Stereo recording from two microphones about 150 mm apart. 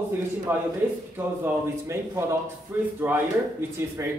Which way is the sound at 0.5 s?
15° right (ahead or behind).